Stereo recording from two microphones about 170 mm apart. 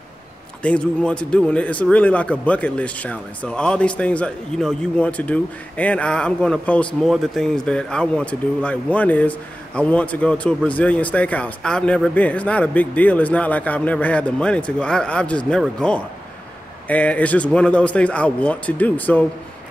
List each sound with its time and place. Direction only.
0.6 s speech: 5° left (ahead or behind)